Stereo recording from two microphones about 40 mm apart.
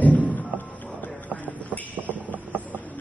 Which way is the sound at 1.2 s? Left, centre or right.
Left.